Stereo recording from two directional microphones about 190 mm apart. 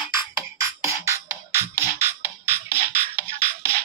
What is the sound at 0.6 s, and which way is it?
Music, 15° right (ahead or behind).